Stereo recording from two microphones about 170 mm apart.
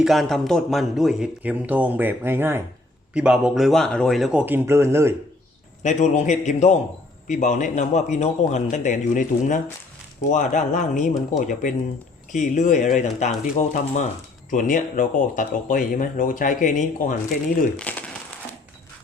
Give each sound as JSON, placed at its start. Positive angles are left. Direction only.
{"t": 0.0, "sound": "speech", "side_deg": 0}
{"t": 5.8, "sound": "speech", "side_deg": 45}
{"t": 17.7, "sound": "speech", "side_deg": 10}